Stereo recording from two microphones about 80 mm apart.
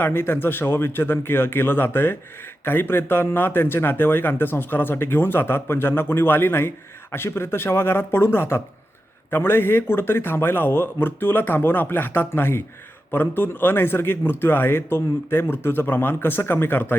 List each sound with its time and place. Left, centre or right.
0.0 s speech: left